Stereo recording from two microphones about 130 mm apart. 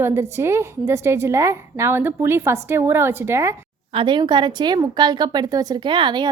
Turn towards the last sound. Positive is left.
turn(degrees=-35)  # may be behind; listen again after turning